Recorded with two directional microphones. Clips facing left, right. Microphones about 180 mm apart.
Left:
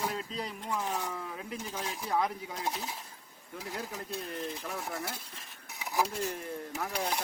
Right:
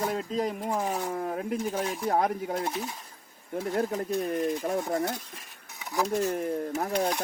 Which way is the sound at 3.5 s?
55° right (ahead or behind).